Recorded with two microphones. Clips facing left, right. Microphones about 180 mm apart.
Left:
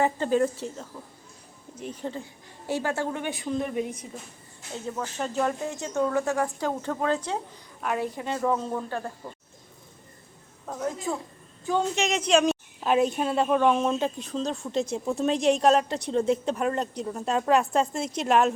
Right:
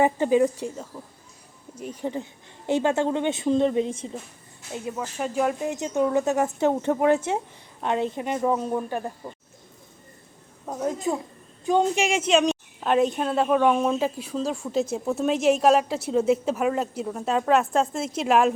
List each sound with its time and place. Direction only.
0.0 s speech: 15° right (ahead or behind)
1.9 s a woman's voice: 15° right (ahead or behind)
4.7 s speech: 10° right (ahead or behind)
10.7 s a woman's voice: 20° right (ahead or behind); by 18.5 s 5° right (ahead or behind)